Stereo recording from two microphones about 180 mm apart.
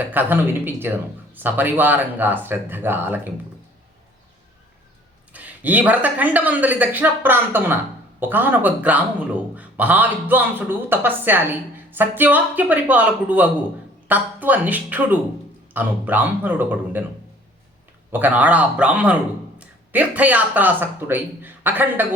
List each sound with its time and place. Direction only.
0.0 s speech: 10° right (ahead or behind)
5.3 s speech: 10° right (ahead or behind)
18.1 s speech: 10° right (ahead or behind)